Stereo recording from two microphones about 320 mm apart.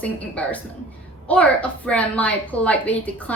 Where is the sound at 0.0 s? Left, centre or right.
Centre.